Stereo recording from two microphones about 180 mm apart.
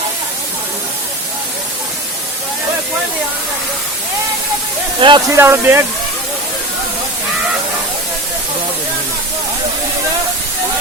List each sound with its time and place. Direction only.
4.9 s speech: 25° right (ahead or behind)
5.4 s speech: 15° right (ahead or behind)